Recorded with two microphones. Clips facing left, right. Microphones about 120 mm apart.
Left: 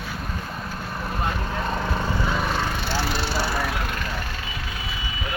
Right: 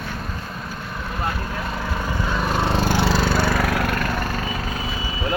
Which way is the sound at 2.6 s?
30° right (ahead or behind).